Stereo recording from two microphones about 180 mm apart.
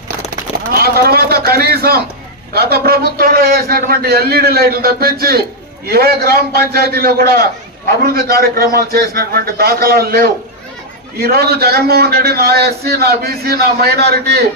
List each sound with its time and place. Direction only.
0.7 s a man's voice: 60° right (ahead or behind)